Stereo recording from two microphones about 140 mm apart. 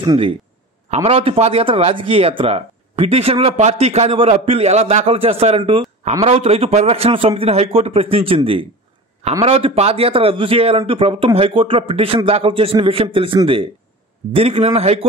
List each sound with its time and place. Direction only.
0.0 s speech: 30° right (ahead or behind)
0.8 s a man's voice: 45° right (ahead or behind)
9.4 s a man's voice: 40° right (ahead or behind)